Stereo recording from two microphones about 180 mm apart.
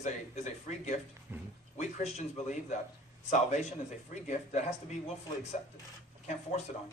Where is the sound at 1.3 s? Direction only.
10° right (ahead or behind).